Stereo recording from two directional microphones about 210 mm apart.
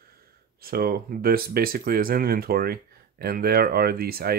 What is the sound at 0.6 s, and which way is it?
Speech, 45° right (ahead or behind).